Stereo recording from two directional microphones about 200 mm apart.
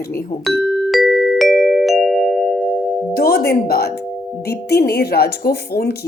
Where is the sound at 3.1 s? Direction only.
50° left (ahead or behind).